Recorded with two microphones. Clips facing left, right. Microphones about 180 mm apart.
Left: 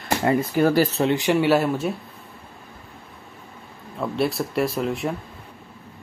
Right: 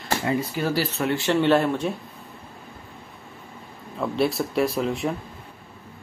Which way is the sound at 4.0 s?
Centre (ahead or behind).